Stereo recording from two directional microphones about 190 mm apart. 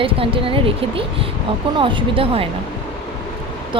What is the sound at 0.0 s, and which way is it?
Speech, 30° right (ahead or behind).